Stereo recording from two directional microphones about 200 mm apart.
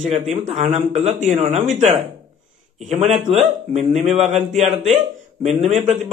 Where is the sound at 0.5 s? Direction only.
35° right (ahead or behind).